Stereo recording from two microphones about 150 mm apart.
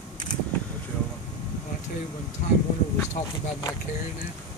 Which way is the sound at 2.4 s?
60° left (ahead or behind).